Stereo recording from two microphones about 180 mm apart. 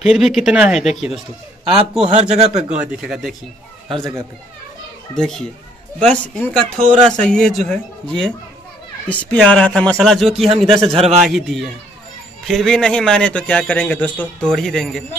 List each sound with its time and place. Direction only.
0.0 s a man's voice: centre (ahead or behind)
1.6 s a man's voice: 30° right (ahead or behind)
2.7 s a man's voice: 5° right (ahead or behind)
4.0 s speech: 15° right (ahead or behind)
5.1 s a man's voice: 5° left (ahead or behind)
10.8 s a man's voice: 30° right (ahead or behind)
11.2 s a man's voice: centre (ahead or behind)